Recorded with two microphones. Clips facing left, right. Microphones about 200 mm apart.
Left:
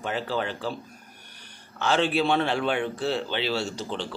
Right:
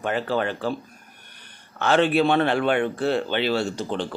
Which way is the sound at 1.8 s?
55° right (ahead or behind).